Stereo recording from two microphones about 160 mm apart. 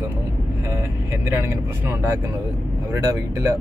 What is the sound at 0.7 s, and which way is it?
Speech, 15° right (ahead or behind).